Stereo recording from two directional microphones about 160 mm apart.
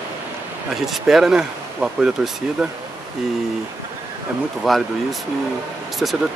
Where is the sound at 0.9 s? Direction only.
Centre (ahead or behind).